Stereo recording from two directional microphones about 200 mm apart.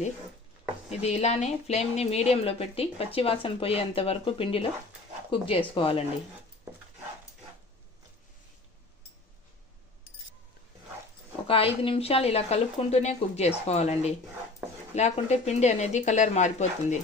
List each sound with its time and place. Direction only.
0.8 s speech: 30° left (ahead or behind)
11.4 s a woman's voice: 30° left (ahead or behind)